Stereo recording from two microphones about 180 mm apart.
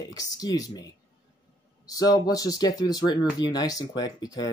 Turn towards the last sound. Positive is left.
turn(degrees=20)  # may be behind; listen again after turning